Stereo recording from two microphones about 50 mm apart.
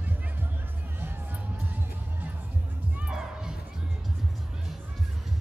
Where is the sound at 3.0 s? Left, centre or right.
Centre.